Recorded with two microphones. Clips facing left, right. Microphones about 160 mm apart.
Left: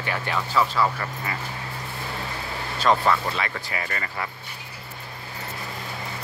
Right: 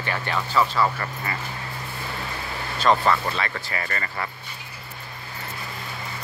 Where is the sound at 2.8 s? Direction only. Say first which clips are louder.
Right 1 dB; 5° left (ahead or behind).